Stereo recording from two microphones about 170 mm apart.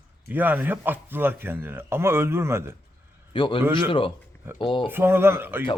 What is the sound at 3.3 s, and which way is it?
Speech, 30° left (ahead or behind).